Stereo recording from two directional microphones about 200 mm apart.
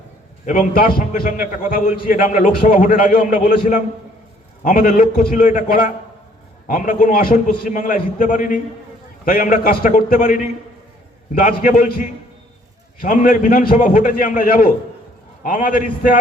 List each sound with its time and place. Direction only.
0.4 s a man's voice: 45° left (ahead or behind)